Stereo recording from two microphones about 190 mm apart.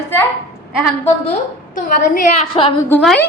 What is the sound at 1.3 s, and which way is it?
Speech, 45° left (ahead or behind).